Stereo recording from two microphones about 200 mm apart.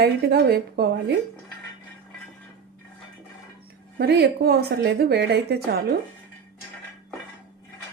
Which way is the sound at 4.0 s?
55° right (ahead or behind).